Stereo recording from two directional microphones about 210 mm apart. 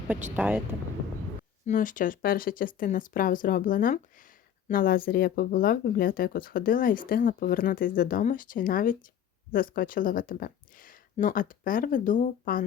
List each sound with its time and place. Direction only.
0.3 s speech: 5° right (ahead or behind)
1.6 s speech: 40° left (ahead or behind)